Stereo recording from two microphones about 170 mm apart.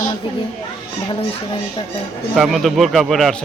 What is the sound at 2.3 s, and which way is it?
A man's voice, centre (ahead or behind).